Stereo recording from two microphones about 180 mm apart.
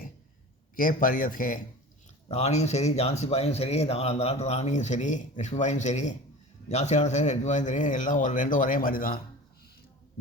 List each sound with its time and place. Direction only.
0.8 s speech: 50° left (ahead or behind)
2.3 s speech: 35° left (ahead or behind); by 9.2 s 50° left (ahead or behind)